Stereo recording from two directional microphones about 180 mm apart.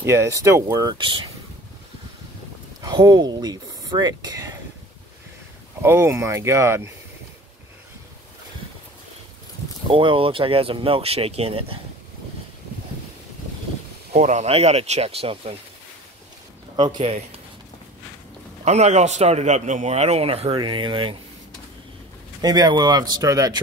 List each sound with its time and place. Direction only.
0.0 s speech: 15° right (ahead or behind)
2.8 s speech: 25° right (ahead or behind)
5.8 s speech: 15° right (ahead or behind)
9.8 s a man's voice: 30° right (ahead or behind)
14.1 s a man's voice: 40° right (ahead or behind)
16.7 s speech: 25° right (ahead or behind)
18.6 s a man's voice: 40° right (ahead or behind)
22.4 s speech: 20° right (ahead or behind)